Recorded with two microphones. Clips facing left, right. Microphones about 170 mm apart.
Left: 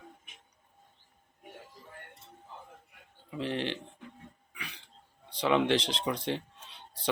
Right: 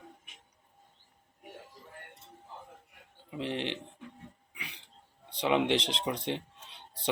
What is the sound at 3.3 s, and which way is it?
Speech, 20° right (ahead or behind).